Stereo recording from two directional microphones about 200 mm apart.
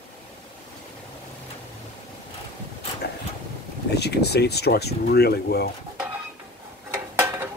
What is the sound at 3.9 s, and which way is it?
Speech, 55° left (ahead or behind).